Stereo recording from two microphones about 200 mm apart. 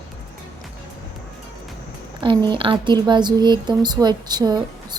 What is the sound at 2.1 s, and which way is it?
Speech, 20° right (ahead or behind).